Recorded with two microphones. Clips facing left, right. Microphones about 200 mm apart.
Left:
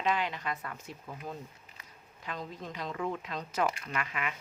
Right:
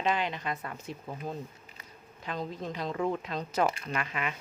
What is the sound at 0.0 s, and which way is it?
A woman's voice, 25° right (ahead or behind).